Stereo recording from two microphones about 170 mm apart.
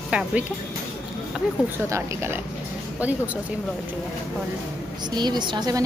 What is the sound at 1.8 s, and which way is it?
A woman's voice, 15° right (ahead or behind).